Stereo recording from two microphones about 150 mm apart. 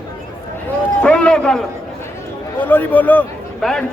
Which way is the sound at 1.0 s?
5° left (ahead or behind).